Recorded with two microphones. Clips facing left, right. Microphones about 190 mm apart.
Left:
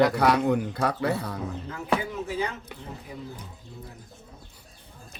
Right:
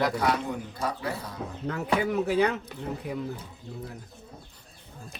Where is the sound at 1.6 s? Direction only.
70° right (ahead or behind).